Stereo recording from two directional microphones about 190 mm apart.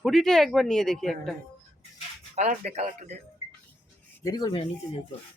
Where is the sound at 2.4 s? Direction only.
35° right (ahead or behind).